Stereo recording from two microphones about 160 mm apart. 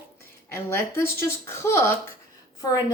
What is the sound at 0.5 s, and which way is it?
A woman's voice, 15° left (ahead or behind).